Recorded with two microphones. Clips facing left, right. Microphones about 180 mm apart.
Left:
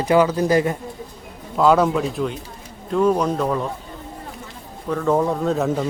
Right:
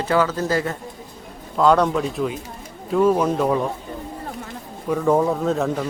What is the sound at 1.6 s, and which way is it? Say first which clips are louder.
A man's voice: left 1 dB; 5° left (ahead or behind).